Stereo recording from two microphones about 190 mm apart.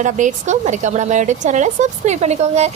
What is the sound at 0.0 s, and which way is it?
A woman's voice, 40° right (ahead or behind).